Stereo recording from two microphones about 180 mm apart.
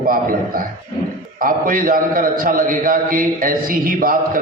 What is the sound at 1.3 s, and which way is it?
A man's voice, 50° right (ahead or behind).